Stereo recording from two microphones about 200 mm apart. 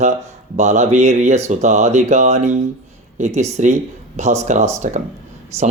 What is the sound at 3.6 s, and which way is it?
Speech, 35° right (ahead or behind).